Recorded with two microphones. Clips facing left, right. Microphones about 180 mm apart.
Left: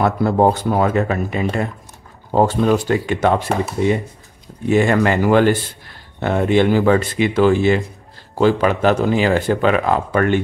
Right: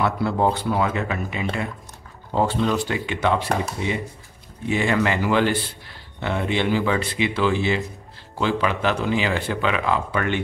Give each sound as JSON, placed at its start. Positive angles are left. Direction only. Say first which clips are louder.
{"t": 0.0, "sound": "speech", "louder": "left 6 dB", "side_deg": 45}